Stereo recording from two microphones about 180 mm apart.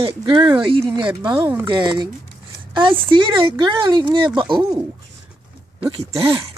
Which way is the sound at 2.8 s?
25° right (ahead or behind).